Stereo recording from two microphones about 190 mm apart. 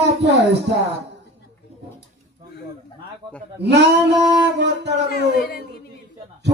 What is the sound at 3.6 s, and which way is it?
Male singing, 65° right (ahead or behind).